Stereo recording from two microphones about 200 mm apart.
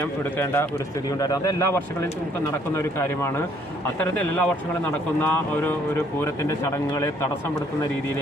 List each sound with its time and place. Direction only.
0.3 s speech: 10° left (ahead or behind)
6.9 s speech: 15° left (ahead or behind)